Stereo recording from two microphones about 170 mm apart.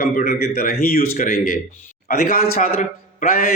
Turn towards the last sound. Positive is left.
turn(degrees=55)  # may be behind; listen again after turning